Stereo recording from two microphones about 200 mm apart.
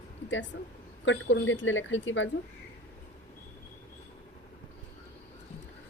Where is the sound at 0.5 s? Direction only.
65° left (ahead or behind).